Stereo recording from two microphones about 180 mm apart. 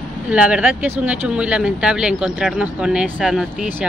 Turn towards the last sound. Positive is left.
turn(degrees=-5)  # may be behind; listen again after turning